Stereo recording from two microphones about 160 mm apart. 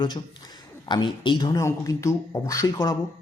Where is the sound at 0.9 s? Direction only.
30° left (ahead or behind).